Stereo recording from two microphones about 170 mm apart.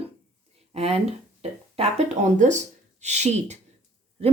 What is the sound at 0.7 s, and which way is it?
Speech, 35° right (ahead or behind).